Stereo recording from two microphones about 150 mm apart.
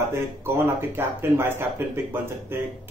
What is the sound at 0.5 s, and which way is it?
Speech, 15° right (ahead or behind).